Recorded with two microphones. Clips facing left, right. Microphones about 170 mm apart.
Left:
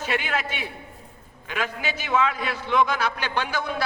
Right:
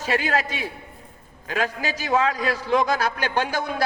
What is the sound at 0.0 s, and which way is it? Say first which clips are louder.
A man's voice: right 4 dB; 35° right (ahead or behind).